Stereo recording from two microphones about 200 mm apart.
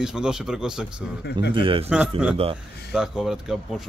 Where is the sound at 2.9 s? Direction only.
5° right (ahead or behind).